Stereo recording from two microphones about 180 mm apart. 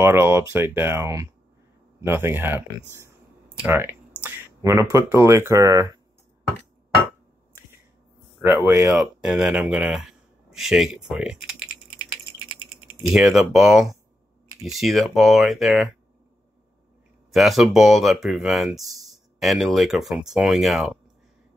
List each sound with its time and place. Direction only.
0.0 s speech: 15° right (ahead or behind)
3.6 s speech: 15° right (ahead or behind)
8.4 s speech: 15° right (ahead or behind)
8.9 s speech: 5° right (ahead or behind)
13.1 s speech: centre (ahead or behind)
17.3 s speech: centre (ahead or behind)